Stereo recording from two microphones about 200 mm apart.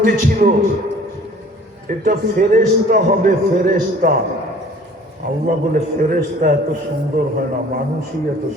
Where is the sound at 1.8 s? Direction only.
45° right (ahead or behind).